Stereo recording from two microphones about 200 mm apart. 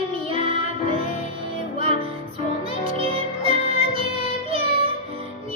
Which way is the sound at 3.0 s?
30° right (ahead or behind).